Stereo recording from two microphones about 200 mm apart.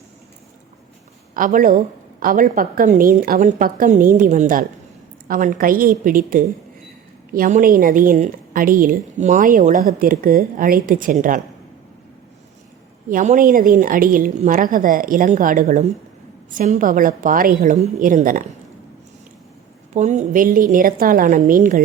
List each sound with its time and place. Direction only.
1.3 s a woman's voice: 40° right (ahead or behind)
13.1 s a woman's voice: 40° right (ahead or behind)
19.9 s a woman's voice: 35° right (ahead or behind)